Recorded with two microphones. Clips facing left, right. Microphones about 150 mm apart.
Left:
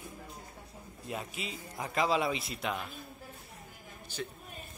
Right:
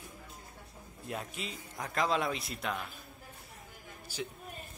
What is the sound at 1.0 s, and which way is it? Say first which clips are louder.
A man's voice: left 1 dB; centre (ahead or behind).